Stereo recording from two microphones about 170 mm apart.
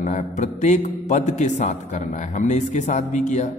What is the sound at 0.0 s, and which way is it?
A man's voice, 45° left (ahead or behind).